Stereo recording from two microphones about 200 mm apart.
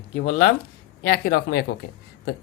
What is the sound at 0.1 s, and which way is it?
Speech, 35° left (ahead or behind).